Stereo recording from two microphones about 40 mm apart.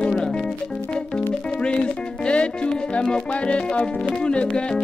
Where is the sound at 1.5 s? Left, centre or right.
Left.